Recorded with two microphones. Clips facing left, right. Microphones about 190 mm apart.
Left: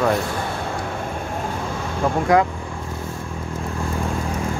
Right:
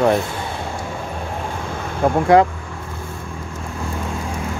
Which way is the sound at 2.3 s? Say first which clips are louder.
Right 4 dB; 30° right (ahead or behind).